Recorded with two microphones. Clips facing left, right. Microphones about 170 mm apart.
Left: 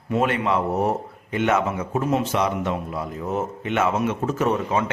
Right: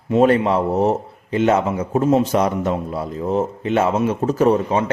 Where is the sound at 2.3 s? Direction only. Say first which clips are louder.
Right 5 dB; 40° right (ahead or behind).